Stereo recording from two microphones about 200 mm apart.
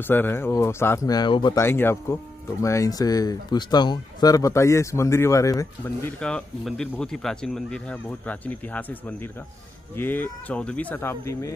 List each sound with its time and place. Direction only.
0.0 s speech: 10° left (ahead or behind)
6.1 s speech: 5° left (ahead or behind)